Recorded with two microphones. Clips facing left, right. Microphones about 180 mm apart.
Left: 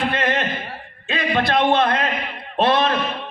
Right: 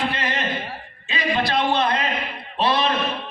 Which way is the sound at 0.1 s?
50° left (ahead or behind).